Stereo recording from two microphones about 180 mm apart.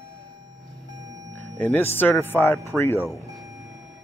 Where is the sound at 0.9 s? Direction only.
20° right (ahead or behind).